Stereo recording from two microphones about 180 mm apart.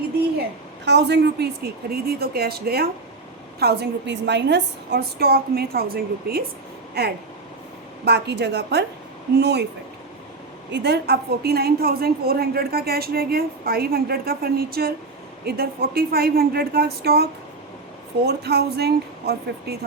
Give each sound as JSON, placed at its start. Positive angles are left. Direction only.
{"t": 0.9, "sound": "a woman's voice", "side_deg": -70}
{"t": 10.7, "sound": "a woman's voice", "side_deg": -65}
{"t": 18.3, "sound": "a woman's voice", "side_deg": -65}